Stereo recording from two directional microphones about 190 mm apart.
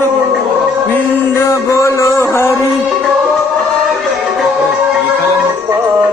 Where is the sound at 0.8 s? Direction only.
10° left (ahead or behind).